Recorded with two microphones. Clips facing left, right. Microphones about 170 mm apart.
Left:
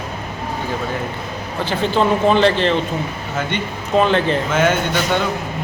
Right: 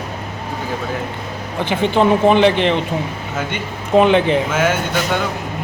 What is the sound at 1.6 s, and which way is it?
Speech, 15° right (ahead or behind).